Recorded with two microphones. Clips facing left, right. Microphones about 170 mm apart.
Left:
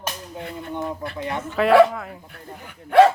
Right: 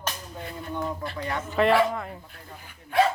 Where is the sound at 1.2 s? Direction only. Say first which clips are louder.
Left 3 dB; 20° left (ahead or behind).